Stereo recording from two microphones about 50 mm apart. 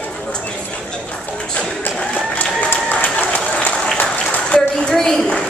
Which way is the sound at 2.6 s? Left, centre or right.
Left.